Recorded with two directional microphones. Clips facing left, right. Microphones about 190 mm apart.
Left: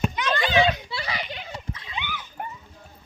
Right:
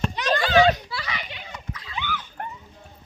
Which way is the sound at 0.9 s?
30° left (ahead or behind).